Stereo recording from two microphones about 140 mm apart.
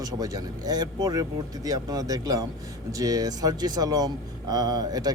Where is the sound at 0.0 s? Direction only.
25° right (ahead or behind).